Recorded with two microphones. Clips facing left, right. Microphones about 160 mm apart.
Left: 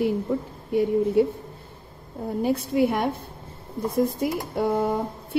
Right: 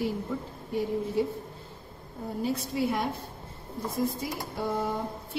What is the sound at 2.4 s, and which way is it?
Speech, 55° left (ahead or behind).